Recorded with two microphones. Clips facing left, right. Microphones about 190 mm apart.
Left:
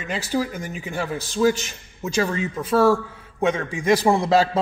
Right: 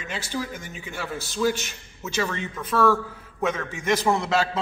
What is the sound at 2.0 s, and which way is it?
A man's voice, 35° left (ahead or behind).